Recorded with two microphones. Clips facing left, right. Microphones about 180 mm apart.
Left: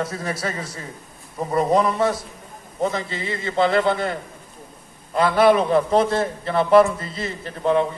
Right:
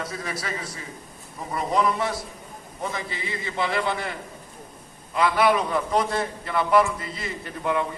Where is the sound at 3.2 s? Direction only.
55° left (ahead or behind).